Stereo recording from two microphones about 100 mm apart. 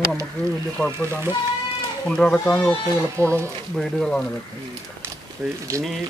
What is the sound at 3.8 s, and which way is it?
Speech, 5° left (ahead or behind).